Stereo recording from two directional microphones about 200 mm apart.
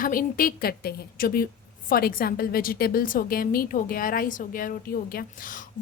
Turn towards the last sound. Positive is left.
turn(degrees=40)  # may be behind; listen again after turning